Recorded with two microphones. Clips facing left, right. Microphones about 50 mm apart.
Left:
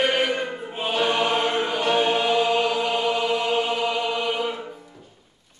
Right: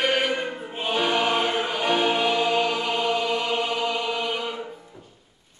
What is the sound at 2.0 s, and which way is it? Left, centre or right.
Choir, centre.